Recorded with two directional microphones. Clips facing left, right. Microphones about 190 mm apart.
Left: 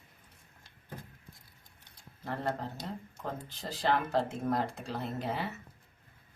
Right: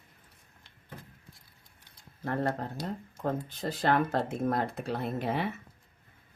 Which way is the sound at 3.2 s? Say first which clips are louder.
Right 9 dB; 55° right (ahead or behind).